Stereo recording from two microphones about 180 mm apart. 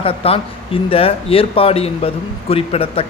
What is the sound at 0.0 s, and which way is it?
A man's voice, 30° left (ahead or behind).